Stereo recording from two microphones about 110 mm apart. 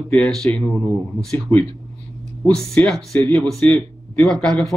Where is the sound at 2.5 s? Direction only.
5° left (ahead or behind).